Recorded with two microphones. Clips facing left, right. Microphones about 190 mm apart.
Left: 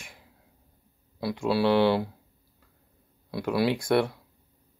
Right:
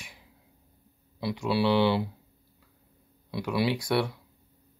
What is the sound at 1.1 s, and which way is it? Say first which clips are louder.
Speech: left 2 dB; 50° left (ahead or behind).